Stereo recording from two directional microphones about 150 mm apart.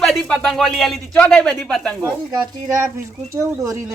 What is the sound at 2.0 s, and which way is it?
Speech, 20° right (ahead or behind).